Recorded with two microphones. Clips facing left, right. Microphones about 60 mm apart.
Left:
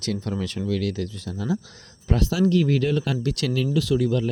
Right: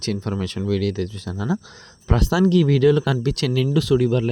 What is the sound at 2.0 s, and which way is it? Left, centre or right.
Speech, right.